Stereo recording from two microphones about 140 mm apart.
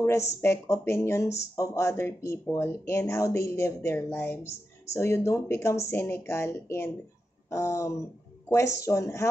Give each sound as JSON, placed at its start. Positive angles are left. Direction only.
{"t": 0.0, "sound": "speech", "side_deg": 20}